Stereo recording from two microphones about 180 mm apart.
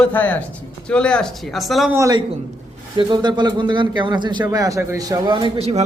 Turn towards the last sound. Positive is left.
turn(degrees=-30)  # may be behind; listen again after turning